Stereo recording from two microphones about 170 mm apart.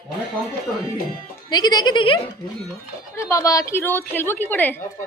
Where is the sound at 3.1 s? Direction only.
15° left (ahead or behind).